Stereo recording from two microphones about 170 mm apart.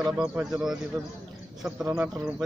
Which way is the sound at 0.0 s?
5° right (ahead or behind).